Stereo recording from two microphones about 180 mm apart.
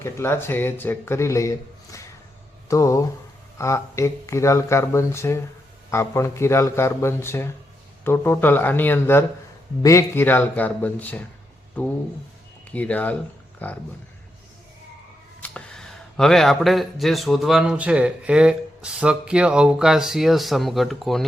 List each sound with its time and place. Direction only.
0.0 s speech: 15° left (ahead or behind)
15.4 s speech: 5° left (ahead or behind)